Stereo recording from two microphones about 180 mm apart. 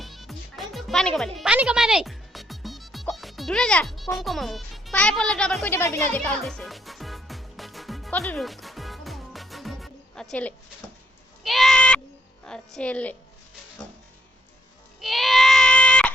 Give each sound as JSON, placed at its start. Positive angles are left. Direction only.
{"t": 0.0, "sound": "music", "side_deg": 0}
{"t": 5.7, "sound": "speech", "side_deg": 15}
{"t": 6.4, "sound": "music", "side_deg": 0}
{"t": 11.4, "sound": "bleat", "side_deg": 0}
{"t": 12.5, "sound": "speech", "side_deg": 5}
{"t": 15.0, "sound": "a sound", "side_deg": 0}